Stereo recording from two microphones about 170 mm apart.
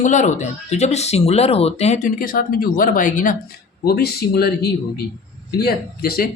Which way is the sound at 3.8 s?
65° left (ahead or behind).